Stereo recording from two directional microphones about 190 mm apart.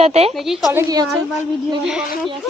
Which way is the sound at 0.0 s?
35° right (ahead or behind).